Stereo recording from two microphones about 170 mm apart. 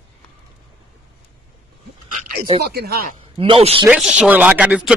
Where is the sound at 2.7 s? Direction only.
65° right (ahead or behind).